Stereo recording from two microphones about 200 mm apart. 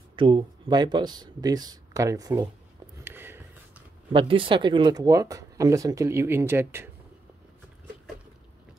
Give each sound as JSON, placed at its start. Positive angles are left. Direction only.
{"t": 0.1, "sound": "speech", "side_deg": -25}
{"t": 3.0, "sound": "a sound", "side_deg": -10}
{"t": 4.1, "sound": "speech", "side_deg": -25}